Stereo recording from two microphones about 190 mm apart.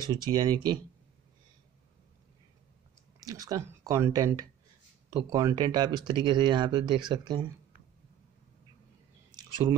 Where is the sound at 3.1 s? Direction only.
20° right (ahead or behind).